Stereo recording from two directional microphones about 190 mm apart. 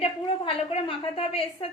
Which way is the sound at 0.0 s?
30° left (ahead or behind).